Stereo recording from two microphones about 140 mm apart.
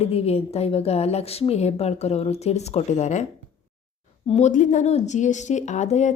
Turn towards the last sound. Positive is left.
turn(degrees=55)  # may be behind; listen again after turning